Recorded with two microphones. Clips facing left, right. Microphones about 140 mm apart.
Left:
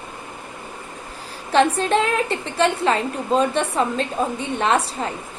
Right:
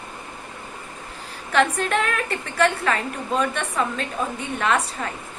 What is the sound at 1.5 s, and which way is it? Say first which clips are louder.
A woman's voice: left 4 dB; 25° left (ahead or behind).